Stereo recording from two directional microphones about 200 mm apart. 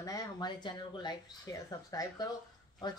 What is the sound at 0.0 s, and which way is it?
Speech, 15° left (ahead or behind).